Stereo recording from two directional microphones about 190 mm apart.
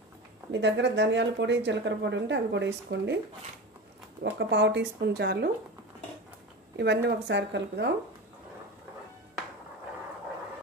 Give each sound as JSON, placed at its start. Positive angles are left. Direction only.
{"t": 0.5, "sound": "speech", "side_deg": -70}
{"t": 4.2, "sound": "speech", "side_deg": -65}
{"t": 6.8, "sound": "speech", "side_deg": -65}